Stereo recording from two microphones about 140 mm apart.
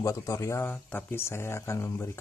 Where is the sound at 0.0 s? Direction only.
25° left (ahead or behind).